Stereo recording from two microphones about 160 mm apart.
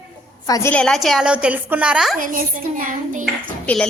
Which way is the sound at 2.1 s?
60° right (ahead or behind).